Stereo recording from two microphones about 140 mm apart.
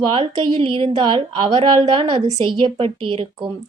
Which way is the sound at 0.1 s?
40° right (ahead or behind).